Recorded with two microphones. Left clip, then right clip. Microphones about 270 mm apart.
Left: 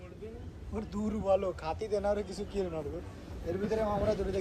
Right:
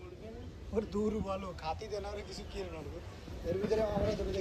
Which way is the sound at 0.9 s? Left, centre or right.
Right.